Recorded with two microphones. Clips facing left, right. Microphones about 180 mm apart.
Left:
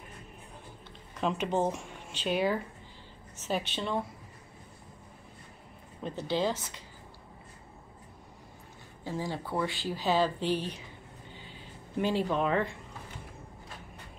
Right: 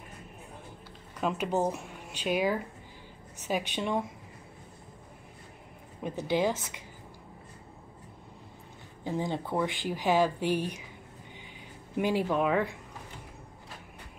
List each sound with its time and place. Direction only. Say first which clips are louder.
1.2 s speech: even; 5° right (ahead or behind)
6.0 s speech: right 2 dB; 15° right (ahead or behind)
9.0 s speech: right 3 dB; 20° right (ahead or behind)